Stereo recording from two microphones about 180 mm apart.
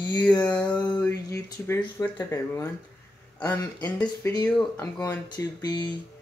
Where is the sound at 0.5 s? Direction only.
5° left (ahead or behind).